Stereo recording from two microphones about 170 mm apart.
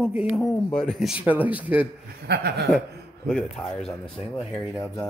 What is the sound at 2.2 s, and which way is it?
Chuckle, 70° right (ahead or behind).